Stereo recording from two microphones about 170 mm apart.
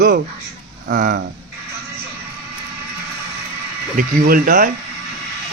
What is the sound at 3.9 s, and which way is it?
Speech, 55° right (ahead or behind).